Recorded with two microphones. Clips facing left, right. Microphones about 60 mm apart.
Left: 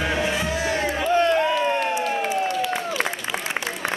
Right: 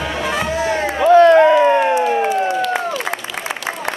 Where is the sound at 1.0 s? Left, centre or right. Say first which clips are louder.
Right 12 dB; right.